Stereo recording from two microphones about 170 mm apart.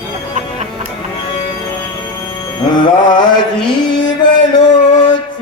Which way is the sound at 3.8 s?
25° left (ahead or behind).